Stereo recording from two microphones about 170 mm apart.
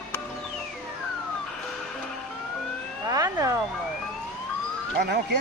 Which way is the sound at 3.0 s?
20° right (ahead or behind).